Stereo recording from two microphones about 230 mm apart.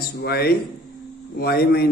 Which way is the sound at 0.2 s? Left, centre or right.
Left.